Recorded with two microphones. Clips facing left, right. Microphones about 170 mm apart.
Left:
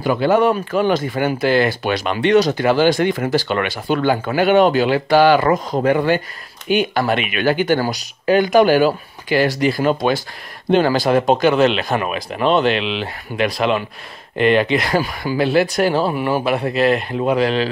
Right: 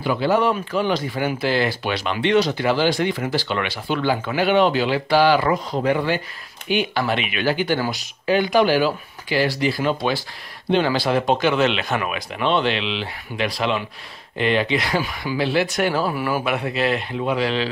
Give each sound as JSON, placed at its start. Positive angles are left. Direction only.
{"t": 0.0, "sound": "speech", "side_deg": 50}
{"t": 7.8, "sound": "speech", "side_deg": 40}
{"t": 16.0, "sound": "speech", "side_deg": 20}
{"t": 16.4, "sound": "speech", "side_deg": 40}